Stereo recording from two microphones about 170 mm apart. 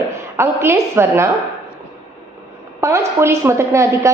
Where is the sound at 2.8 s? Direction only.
15° right (ahead or behind).